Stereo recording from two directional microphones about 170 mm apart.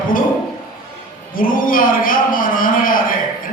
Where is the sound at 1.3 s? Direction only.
55° left (ahead or behind).